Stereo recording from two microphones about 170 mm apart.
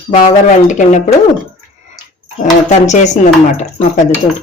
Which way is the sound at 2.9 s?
45° left (ahead or behind).